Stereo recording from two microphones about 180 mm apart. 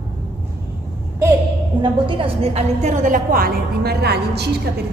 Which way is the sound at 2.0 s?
30° right (ahead or behind).